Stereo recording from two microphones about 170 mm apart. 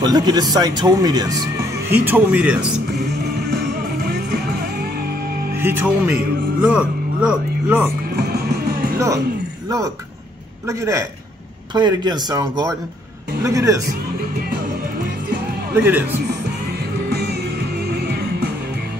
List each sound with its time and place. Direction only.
0.0 s speech: 25° right (ahead or behind)
3.0 s music: 75° right (ahead or behind)
5.6 s speech: 10° right (ahead or behind)
8.2 s music: 70° right (ahead or behind)
8.9 s speech: 20° right (ahead or behind)
10.7 s speech: 20° right (ahead or behind)
15.7 s speech: 10° right (ahead or behind)
17.1 s music: 75° right (ahead or behind)